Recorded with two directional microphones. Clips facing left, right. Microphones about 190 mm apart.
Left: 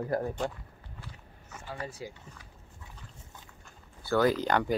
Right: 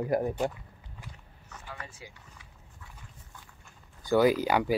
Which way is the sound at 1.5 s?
30° left (ahead or behind).